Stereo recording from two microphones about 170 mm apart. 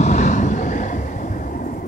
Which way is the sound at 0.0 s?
45° left (ahead or behind).